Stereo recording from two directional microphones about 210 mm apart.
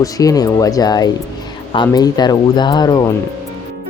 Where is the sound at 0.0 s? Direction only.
15° left (ahead or behind).